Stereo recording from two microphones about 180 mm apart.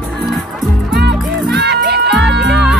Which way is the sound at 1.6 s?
65° right (ahead or behind).